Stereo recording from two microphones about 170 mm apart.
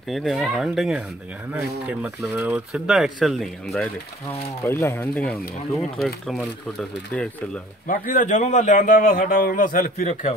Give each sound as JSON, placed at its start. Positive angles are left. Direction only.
{"t": 0.1, "sound": "speech", "side_deg": 0}
{"t": 4.6, "sound": "speech", "side_deg": 15}
{"t": 7.9, "sound": "a man's voice", "side_deg": 50}